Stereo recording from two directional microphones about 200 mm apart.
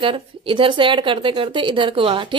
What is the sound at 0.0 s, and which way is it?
A woman's voice, 25° right (ahead or behind).